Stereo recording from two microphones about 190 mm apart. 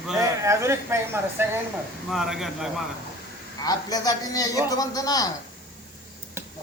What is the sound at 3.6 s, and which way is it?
A man's voice, 20° left (ahead or behind).